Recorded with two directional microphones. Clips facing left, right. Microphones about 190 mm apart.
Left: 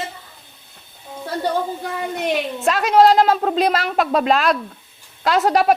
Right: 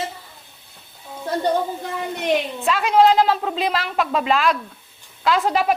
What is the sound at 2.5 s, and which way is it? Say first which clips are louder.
A woman's voice: left 4 dB; 45° left (ahead or behind).